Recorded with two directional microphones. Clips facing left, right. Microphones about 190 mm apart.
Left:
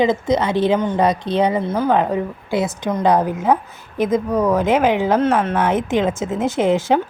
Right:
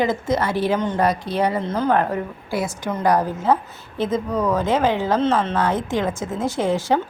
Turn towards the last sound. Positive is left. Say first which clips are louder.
# left 4 dB
turn(degrees=20)  # may be behind; listen again after turning